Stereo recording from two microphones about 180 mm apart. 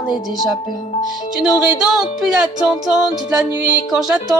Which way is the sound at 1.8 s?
Centre (ahead or behind).